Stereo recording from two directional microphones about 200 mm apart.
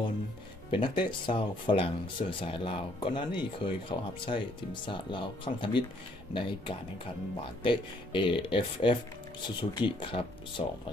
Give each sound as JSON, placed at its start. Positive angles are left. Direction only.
{"t": 0.7, "sound": "speech", "side_deg": 25}
{"t": 4.8, "sound": "speech", "side_deg": 25}